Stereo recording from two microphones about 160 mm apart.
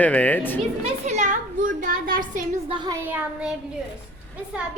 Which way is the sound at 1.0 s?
50° right (ahead or behind).